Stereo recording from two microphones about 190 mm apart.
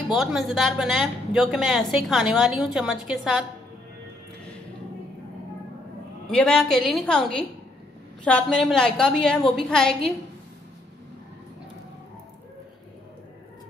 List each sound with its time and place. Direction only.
0.1 s speech: centre (ahead or behind)
6.2 s speech: 5° left (ahead or behind)